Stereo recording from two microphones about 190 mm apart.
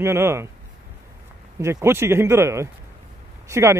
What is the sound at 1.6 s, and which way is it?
A man's voice, 15° right (ahead or behind).